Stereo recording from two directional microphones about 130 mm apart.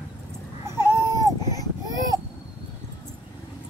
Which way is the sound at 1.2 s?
30° left (ahead or behind).